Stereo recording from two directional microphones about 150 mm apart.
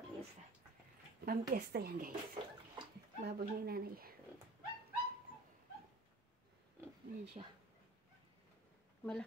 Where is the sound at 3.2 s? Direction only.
90° right.